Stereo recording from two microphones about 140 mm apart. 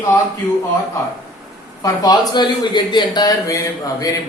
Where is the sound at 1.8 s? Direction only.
25° left (ahead or behind).